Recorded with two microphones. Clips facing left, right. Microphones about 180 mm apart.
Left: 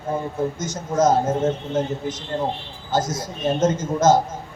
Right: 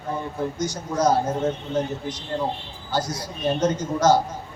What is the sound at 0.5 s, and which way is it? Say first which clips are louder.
A man's voice: left 3 dB; 25° left (ahead or behind).